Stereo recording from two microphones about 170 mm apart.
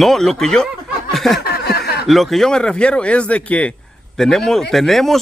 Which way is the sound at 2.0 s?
Centre (ahead or behind).